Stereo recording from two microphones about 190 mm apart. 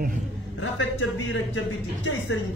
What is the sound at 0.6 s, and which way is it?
Speech, 90° left.